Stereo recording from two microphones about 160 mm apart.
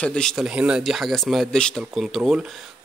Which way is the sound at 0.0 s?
5° left (ahead or behind).